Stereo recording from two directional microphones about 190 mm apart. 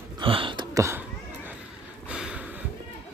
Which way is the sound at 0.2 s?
25° right (ahead or behind).